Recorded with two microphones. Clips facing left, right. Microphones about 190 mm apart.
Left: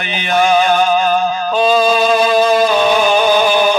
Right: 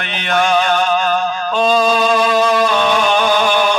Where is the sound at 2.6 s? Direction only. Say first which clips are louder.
Left 3 dB; 5° left (ahead or behind).